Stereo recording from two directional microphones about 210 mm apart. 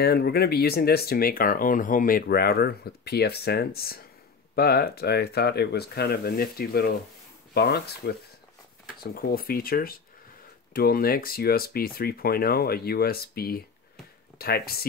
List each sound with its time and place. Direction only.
0.0 s speech: 50° left (ahead or behind)